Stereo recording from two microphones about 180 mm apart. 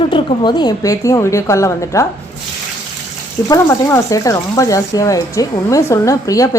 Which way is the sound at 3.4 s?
15° left (ahead or behind).